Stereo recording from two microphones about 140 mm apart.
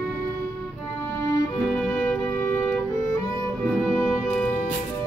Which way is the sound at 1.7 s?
10° left (ahead or behind).